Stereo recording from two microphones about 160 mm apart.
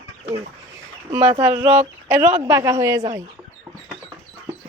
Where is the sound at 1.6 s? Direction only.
40° right (ahead or behind).